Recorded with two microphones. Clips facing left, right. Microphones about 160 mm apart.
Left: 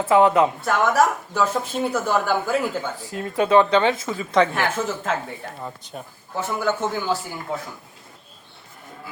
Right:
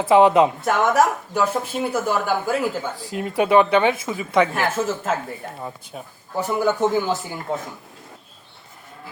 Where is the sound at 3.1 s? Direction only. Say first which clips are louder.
Right 1 dB; 15° right (ahead or behind).